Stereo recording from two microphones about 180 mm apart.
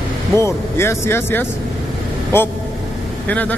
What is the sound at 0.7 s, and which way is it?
Speech, 15° left (ahead or behind).